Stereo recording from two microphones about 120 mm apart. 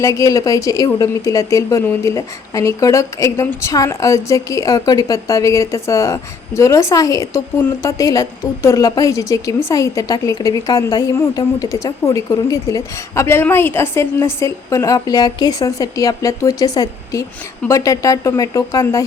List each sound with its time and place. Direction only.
0.0 s a woman's voice: 25° left (ahead or behind)
3.4 s a woman's voice: 15° left (ahead or behind)
3.7 s a woman's voice: 25° left (ahead or behind)